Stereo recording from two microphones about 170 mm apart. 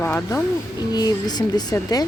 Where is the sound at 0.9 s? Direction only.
25° left (ahead or behind).